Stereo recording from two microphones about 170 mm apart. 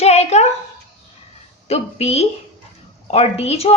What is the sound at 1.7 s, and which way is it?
Speech, 40° left (ahead or behind).